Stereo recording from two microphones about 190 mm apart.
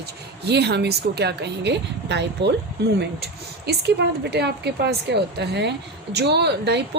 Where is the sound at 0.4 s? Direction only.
60° right (ahead or behind).